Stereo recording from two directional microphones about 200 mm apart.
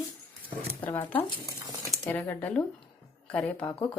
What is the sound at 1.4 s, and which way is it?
Speech, 15° right (ahead or behind).